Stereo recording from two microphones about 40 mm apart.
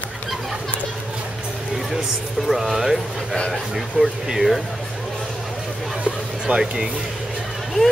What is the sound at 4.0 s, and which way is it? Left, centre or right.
Speech, right.